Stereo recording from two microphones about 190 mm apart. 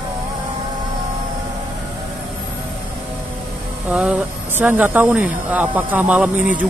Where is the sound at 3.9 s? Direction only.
5° right (ahead or behind).